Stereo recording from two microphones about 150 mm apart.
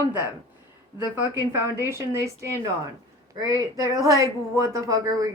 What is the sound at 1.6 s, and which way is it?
A woman's voice, 15° right (ahead or behind).